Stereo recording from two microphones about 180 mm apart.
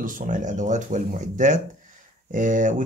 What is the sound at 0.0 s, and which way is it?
Speech, 50° right (ahead or behind).